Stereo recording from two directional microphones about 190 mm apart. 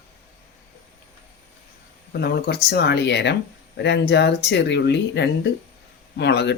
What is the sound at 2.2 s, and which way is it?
Speech, 55° left (ahead or behind).